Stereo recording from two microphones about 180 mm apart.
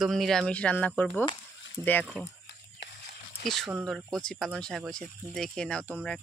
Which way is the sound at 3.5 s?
Centre (ahead or behind).